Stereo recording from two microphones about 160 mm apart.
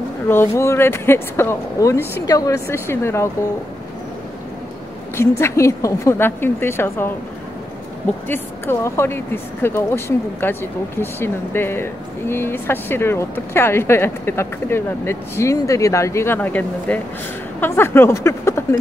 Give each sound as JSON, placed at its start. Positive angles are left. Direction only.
{"t": 0.3, "sound": "speech", "side_deg": 15}
{"t": 5.4, "sound": "speech", "side_deg": 20}
{"t": 8.3, "sound": "speech", "side_deg": 15}